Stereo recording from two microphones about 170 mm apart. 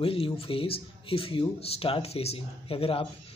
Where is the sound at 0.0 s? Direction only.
30° left (ahead or behind).